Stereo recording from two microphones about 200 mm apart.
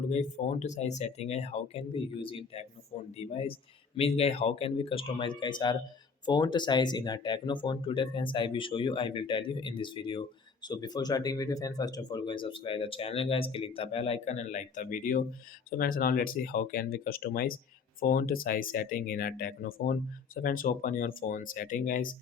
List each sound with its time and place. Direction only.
0.1 s speech: 35° left (ahead or behind)
3.2 s speech: 30° left (ahead or behind)